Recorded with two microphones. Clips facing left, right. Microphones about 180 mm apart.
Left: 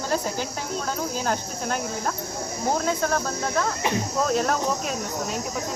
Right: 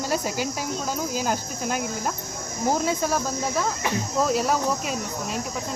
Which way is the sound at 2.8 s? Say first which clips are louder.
Even; 10° right (ahead or behind).